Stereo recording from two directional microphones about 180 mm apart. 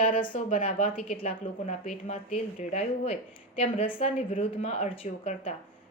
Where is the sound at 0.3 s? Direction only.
45° left (ahead or behind).